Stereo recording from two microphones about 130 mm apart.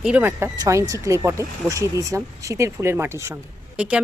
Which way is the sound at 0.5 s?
25° right (ahead or behind).